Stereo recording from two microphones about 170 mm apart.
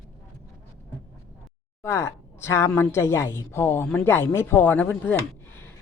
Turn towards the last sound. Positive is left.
turn(degrees=10)  # may be behind; listen again after turning